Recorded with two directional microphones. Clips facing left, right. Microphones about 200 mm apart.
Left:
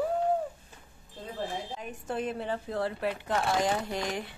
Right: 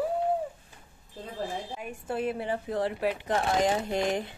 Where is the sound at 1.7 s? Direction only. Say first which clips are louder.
Right 1 dB; 10° right (ahead or behind).